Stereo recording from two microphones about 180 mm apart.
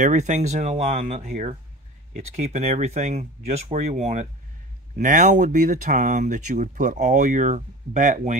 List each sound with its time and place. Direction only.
0.0 s speech: 40° right (ahead or behind)